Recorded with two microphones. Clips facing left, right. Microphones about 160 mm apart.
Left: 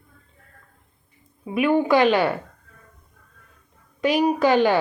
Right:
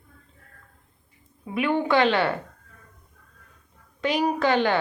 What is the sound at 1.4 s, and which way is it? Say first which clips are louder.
Speech: left 4 dB; 15° left (ahead or behind).